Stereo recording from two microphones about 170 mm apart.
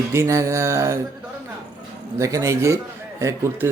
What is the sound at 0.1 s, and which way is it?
Speech, 15° right (ahead or behind).